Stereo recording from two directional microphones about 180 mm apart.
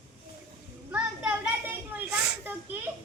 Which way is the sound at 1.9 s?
10° right (ahead or behind).